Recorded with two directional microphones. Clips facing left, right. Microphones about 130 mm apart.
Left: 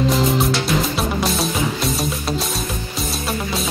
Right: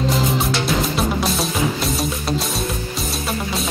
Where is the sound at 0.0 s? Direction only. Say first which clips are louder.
Left 2 dB; centre (ahead or behind).